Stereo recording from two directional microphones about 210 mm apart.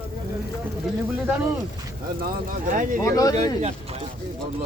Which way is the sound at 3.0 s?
15° left (ahead or behind).